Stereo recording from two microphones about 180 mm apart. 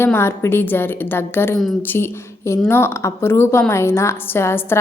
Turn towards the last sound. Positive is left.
turn(degrees=15)  # may be behind; listen again after turning